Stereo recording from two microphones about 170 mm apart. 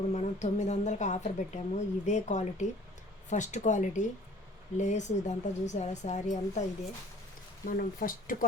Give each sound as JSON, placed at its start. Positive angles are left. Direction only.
{"t": 0.1, "sound": "a woman's voice", "side_deg": 40}
{"t": 7.7, "sound": "a woman's voice", "side_deg": 55}